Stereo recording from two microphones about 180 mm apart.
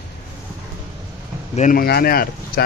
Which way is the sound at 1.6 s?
55° left (ahead or behind).